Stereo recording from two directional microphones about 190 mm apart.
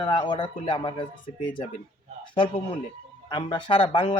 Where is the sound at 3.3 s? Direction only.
25° left (ahead or behind).